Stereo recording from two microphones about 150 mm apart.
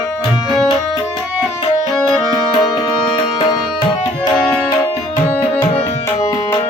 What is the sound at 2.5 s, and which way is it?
Tabla, 30° left (ahead or behind).